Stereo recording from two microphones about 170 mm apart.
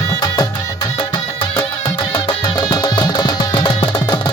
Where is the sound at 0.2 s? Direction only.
20° left (ahead or behind).